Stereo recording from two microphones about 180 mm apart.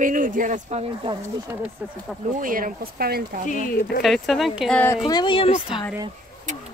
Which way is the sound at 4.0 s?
Centre (ahead or behind).